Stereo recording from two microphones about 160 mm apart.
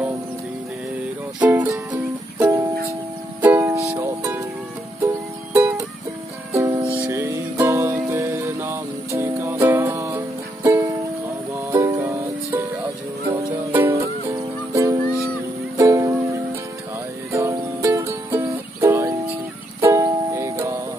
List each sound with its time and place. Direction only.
1.4 s music: 10° right (ahead or behind)
13.7 s music: 15° right (ahead or behind)